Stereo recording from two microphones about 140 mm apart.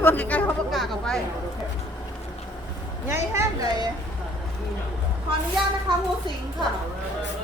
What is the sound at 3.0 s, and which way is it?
Speech, 20° right (ahead or behind).